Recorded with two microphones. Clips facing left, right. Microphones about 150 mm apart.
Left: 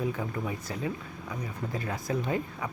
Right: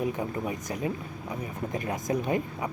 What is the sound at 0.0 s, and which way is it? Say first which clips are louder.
Speech: right 2 dB; 20° right (ahead or behind).